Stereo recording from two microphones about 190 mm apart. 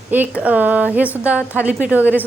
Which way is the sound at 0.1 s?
10° right (ahead or behind).